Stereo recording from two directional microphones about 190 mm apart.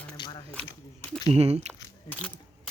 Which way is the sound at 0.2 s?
25° left (ahead or behind).